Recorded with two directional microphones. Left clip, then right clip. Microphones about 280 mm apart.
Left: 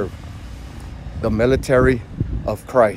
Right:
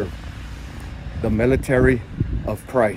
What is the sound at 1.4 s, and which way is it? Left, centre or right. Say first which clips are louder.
Speech: left 3 dB; centre.